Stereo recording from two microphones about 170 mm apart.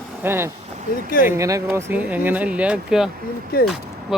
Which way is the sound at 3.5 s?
65° left (ahead or behind).